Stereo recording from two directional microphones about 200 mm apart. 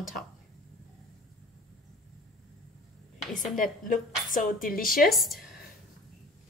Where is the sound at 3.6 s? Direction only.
40° left (ahead or behind).